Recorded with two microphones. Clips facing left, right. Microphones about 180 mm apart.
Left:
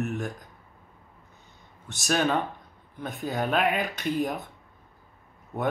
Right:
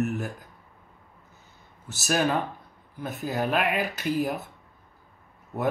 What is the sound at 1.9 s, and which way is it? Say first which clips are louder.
Speech: even; 5° right (ahead or behind).